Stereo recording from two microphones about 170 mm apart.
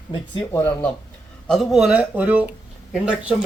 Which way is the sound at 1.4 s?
Centre (ahead or behind).